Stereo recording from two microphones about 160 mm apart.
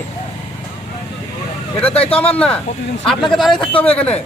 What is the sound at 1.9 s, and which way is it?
Speech, 40° left (ahead or behind).